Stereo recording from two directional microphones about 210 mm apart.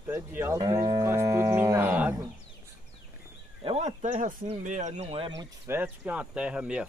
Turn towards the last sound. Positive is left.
turn(degrees=-5)  # may be behind; listen again after turning